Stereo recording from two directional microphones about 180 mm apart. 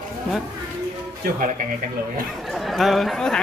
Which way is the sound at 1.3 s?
50° right (ahead or behind).